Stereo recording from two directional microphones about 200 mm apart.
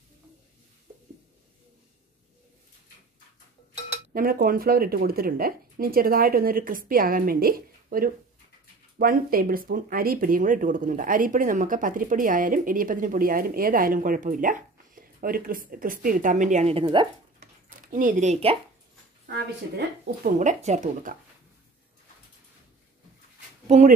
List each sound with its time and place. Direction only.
4.1 s speech: 45° right (ahead or behind); by 17.1 s 25° right (ahead or behind)
17.4 s a sound: 40° right (ahead or behind)
20.2 s speech: 35° right (ahead or behind)